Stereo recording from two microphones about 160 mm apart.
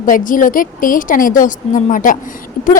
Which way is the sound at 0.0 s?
55° left (ahead or behind).